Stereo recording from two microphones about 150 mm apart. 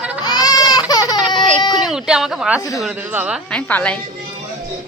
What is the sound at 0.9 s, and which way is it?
Baby cry, 25° left (ahead or behind).